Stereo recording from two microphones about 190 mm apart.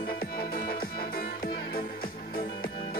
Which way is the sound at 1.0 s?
50° left (ahead or behind).